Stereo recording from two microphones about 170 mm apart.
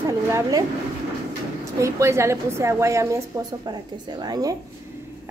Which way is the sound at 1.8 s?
15° right (ahead or behind).